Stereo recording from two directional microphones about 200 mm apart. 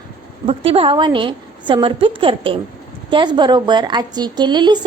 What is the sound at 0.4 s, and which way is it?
A woman's voice, 30° right (ahead or behind).